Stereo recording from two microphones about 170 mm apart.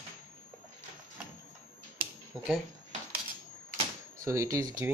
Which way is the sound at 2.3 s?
Centre (ahead or behind).